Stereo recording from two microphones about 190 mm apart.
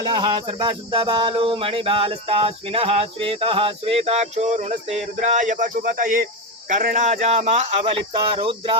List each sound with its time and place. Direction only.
0.0 s speech: 25° right (ahead or behind)